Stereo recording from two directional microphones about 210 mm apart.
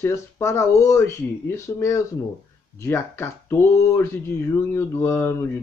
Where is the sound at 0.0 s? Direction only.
15° left (ahead or behind).